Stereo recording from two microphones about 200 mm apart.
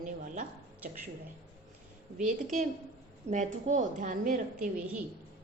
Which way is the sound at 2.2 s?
40° right (ahead or behind).